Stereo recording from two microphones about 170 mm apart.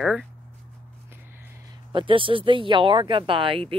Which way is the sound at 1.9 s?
30° right (ahead or behind).